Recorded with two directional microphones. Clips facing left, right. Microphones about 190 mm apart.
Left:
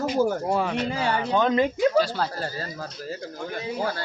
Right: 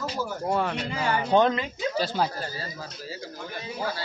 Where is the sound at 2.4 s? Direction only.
45° left (ahead or behind).